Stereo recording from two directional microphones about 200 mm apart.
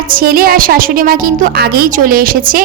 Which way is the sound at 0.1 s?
45° right (ahead or behind).